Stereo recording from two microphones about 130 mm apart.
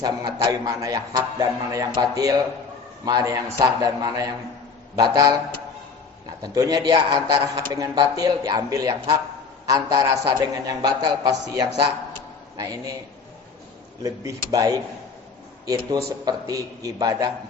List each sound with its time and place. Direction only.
0.0 s a man's voice: 30° right (ahead or behind)
6.4 s a man's voice: 30° right (ahead or behind)
14.5 s a man's voice: 25° right (ahead or behind)